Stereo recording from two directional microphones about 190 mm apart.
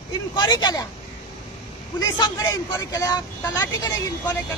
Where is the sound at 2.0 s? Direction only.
20° left (ahead or behind).